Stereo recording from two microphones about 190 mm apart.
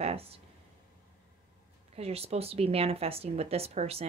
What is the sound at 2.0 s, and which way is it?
Speech, 30° right (ahead or behind).